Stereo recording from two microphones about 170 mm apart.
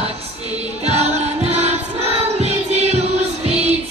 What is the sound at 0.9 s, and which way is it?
Music, 40° right (ahead or behind).